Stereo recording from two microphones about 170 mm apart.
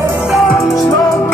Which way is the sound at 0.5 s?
20° left (ahead or behind).